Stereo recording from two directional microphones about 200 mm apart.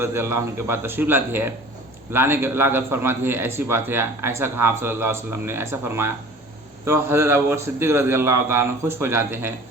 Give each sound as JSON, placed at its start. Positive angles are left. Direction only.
{"t": 0.0, "sound": "a man's voice", "side_deg": -10}